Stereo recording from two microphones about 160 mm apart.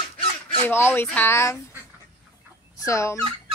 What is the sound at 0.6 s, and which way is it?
A woman's voice, 15° left (ahead or behind).